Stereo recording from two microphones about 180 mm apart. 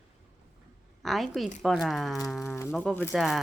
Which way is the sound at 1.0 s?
Centre (ahead or behind).